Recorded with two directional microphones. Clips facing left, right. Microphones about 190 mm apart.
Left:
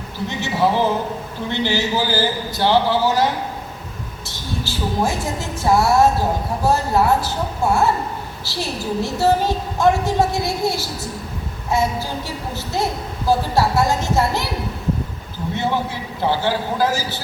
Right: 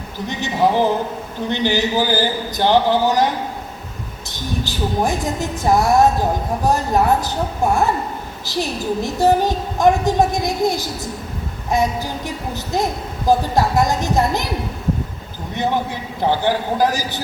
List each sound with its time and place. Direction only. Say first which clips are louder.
0.3 s speech: right 2 dB; 15° right (ahead or behind)
4.3 s speech: right 3 dB; 15° right (ahead or behind)
15.5 s speech: right 2 dB; 15° right (ahead or behind)